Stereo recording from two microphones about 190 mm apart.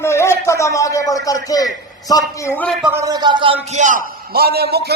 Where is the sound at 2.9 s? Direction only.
20° right (ahead or behind).